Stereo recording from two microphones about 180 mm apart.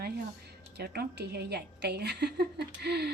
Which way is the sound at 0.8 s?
65° right (ahead or behind).